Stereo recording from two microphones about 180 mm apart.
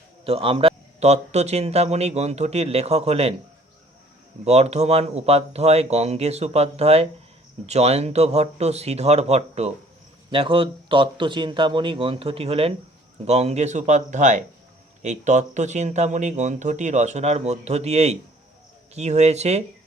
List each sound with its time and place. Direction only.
0.3 s speech: 30° right (ahead or behind)
4.4 s speech: 35° right (ahead or behind)